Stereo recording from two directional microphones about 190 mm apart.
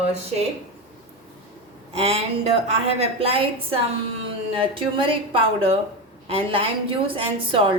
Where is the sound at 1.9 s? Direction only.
35° right (ahead or behind).